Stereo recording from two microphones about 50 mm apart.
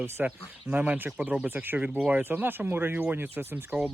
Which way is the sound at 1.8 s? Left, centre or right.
Right.